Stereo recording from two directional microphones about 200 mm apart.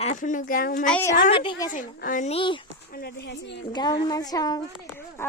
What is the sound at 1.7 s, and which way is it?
Speech, 40° left (ahead or behind).